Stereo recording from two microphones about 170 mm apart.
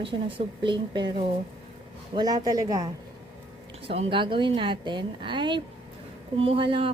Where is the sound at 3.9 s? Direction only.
35° right (ahead or behind).